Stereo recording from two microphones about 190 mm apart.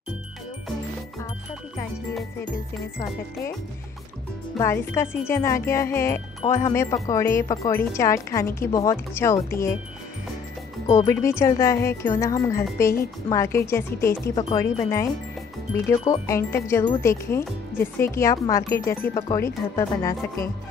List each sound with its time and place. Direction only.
4.6 s speech: 15° left (ahead or behind)
10.9 s speech: 15° left (ahead or behind)